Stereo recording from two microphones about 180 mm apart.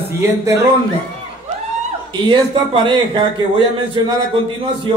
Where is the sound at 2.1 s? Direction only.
25° right (ahead or behind).